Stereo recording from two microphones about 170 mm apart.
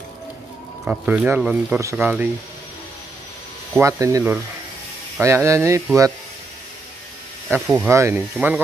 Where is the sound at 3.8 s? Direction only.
20° right (ahead or behind).